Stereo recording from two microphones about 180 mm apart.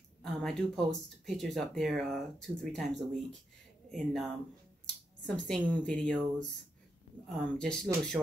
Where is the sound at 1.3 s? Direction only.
Centre (ahead or behind).